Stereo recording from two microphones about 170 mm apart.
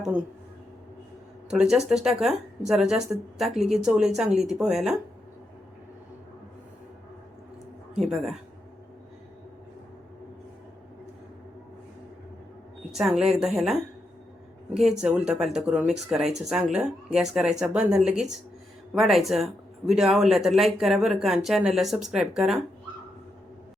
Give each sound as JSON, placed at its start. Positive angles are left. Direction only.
{"t": 1.5, "sound": "speech", "side_deg": -5}
{"t": 7.9, "sound": "speech", "side_deg": 0}
{"t": 12.9, "sound": "speech", "side_deg": -5}